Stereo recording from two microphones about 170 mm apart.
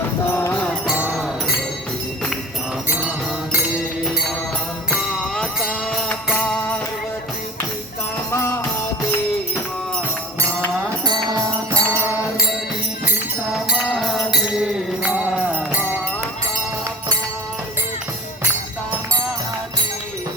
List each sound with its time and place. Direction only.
0.3 s music: 10° left (ahead or behind)
0.9 s music: 5° right (ahead or behind)
4.9 s music: centre (ahead or behind)
8.3 s music: 15° left (ahead or behind)
11.0 s music: 25° right (ahead or behind); by 15.5 s 5° right (ahead or behind)